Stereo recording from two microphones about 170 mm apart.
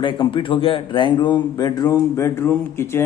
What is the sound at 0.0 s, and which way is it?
Speech, 30° left (ahead or behind).